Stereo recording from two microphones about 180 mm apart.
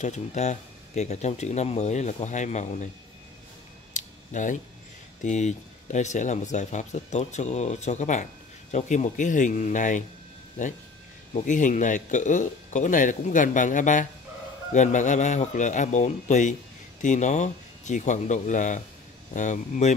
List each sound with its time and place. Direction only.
0.0 s speech: 40° left (ahead or behind)
3.9 s scissors: 45° left (ahead or behind)
5.2 s speech: 40° left (ahead or behind)
11.3 s speech: 45° left (ahead or behind)